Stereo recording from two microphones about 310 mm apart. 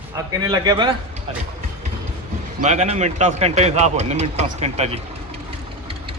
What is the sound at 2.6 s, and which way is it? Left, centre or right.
Speech, right.